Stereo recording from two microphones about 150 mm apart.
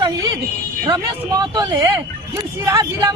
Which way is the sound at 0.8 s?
25° right (ahead or behind).